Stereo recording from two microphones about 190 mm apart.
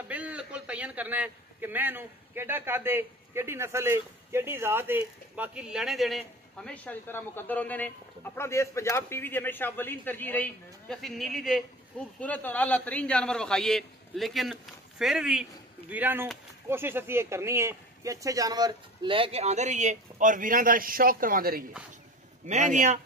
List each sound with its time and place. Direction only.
0.1 s a man's voice: 5° right (ahead or behind); by 22.9 s 40° right (ahead or behind)